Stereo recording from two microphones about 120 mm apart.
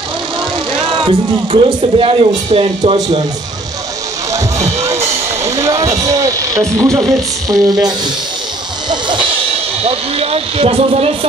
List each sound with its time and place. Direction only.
0.8 s speech: 45° right (ahead or behind)
4.8 s vehicle: 25° right (ahead or behind)
6.8 s speech: 25° right (ahead or behind)
9.8 s speech: 55° right (ahead or behind)